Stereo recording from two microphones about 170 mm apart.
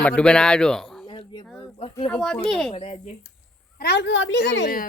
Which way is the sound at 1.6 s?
30° left (ahead or behind).